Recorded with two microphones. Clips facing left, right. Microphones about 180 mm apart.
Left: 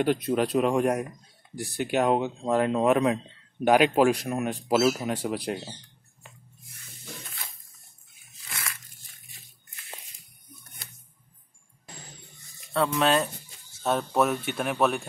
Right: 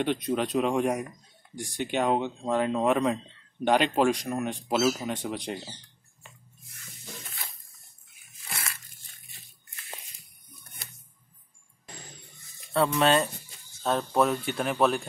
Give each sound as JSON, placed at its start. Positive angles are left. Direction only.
{"t": 0.0, "sound": "speech", "side_deg": 5}
{"t": 8.5, "sound": "a sound", "side_deg": -30}
{"t": 12.5, "sound": "speech", "side_deg": 0}